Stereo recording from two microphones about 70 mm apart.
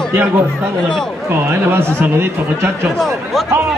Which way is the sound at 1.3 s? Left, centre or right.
Right.